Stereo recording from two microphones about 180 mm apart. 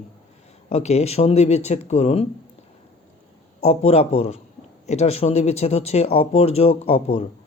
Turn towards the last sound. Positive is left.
turn(degrees=35)  # may be behind; listen again after turning